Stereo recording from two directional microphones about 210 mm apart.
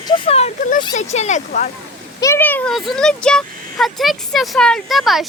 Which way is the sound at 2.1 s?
15° left (ahead or behind).